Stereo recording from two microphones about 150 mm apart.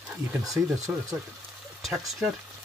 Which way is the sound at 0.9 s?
15° right (ahead or behind).